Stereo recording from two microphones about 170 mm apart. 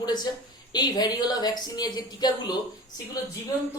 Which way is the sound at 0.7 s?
25° left (ahead or behind).